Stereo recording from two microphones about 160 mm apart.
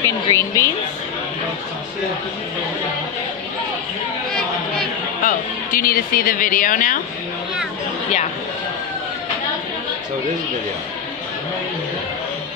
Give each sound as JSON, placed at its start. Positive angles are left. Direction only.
{"t": 0.0, "sound": "a woman's voice", "side_deg": 15}
{"t": 5.2, "sound": "a woman's voice", "side_deg": 60}